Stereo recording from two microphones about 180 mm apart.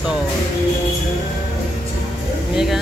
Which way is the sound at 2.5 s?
5° right (ahead or behind).